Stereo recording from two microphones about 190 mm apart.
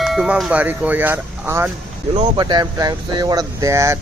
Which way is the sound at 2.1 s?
30° right (ahead or behind).